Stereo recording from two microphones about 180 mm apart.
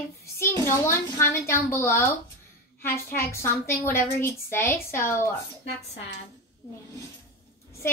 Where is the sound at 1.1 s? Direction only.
15° left (ahead or behind).